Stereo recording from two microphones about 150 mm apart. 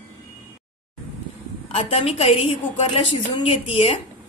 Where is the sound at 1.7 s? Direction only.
40° left (ahead or behind).